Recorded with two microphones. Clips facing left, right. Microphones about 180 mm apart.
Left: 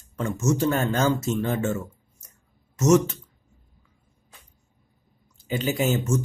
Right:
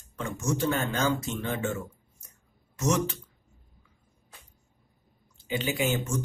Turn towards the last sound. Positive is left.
turn(degrees=40)  # may be behind; listen again after turning